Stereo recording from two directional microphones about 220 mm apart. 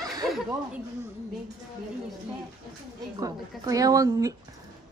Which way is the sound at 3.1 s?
15° right (ahead or behind).